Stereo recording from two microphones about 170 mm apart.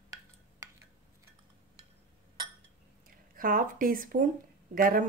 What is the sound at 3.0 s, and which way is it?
Speech, 55° right (ahead or behind).